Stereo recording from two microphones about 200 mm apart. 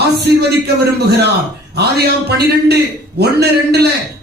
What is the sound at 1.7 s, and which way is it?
Speech, 55° right (ahead or behind).